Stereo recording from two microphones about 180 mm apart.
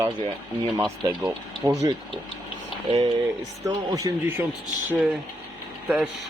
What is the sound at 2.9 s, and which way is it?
Speech, 35° right (ahead or behind).